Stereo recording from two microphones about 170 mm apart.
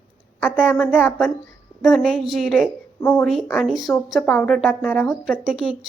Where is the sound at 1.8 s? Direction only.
Centre (ahead or behind).